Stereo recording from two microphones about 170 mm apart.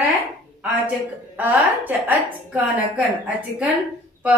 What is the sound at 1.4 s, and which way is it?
A woman's voice, 10° right (ahead or behind).